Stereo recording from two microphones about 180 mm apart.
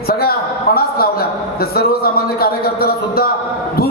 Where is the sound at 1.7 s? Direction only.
60° left (ahead or behind).